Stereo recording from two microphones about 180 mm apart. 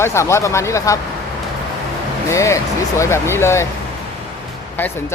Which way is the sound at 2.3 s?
15° left (ahead or behind).